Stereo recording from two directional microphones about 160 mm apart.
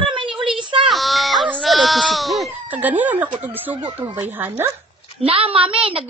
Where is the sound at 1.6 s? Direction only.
Centre (ahead or behind).